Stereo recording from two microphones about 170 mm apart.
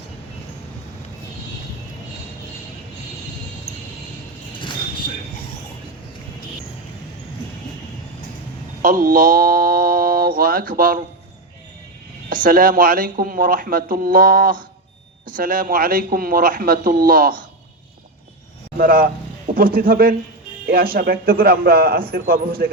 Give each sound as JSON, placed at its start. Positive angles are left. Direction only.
{"t": 8.8, "sound": "mantra", "side_deg": -55}
{"t": 12.3, "sound": "speech", "side_deg": -55}
{"t": 18.8, "sound": "speech", "side_deg": -60}